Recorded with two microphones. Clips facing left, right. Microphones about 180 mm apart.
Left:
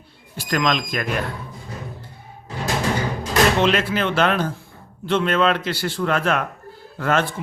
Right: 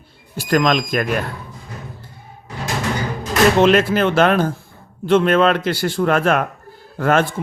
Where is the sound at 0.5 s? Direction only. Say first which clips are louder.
Right 5 dB; 50° right (ahead or behind).